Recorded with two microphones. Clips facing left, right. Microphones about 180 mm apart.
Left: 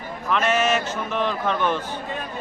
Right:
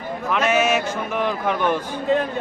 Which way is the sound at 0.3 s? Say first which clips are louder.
Right 2 dB; 10° right (ahead or behind).